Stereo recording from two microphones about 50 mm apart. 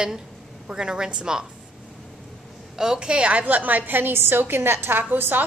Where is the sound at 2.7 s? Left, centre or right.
Centre.